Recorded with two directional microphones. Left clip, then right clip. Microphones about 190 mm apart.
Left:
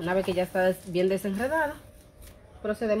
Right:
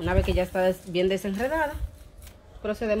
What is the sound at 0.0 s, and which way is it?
A woman's voice, 15° right (ahead or behind).